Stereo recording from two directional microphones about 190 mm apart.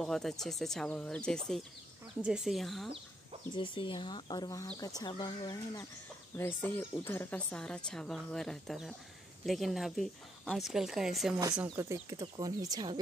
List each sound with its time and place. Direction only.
0.0 s a woman's voice: centre (ahead or behind)
3.5 s speech: 25° left (ahead or behind)
6.3 s a woman's voice: 10° left (ahead or behind)
11.7 s speech: 15° right (ahead or behind)